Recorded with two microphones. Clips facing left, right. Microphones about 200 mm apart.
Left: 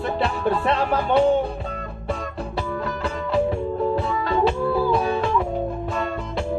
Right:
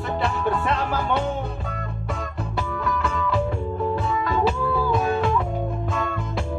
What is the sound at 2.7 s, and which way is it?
Music, 35° left (ahead or behind).